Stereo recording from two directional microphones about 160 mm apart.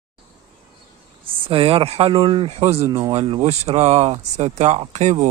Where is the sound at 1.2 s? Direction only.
35° right (ahead or behind).